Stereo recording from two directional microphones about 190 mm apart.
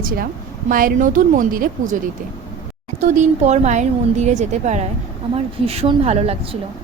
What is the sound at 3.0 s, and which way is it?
Speech, 35° right (ahead or behind).